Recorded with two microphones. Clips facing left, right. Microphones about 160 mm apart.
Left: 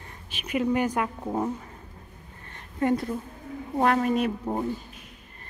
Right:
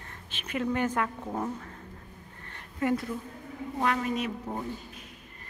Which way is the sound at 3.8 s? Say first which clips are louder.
Left 6 dB; 45° left (ahead or behind).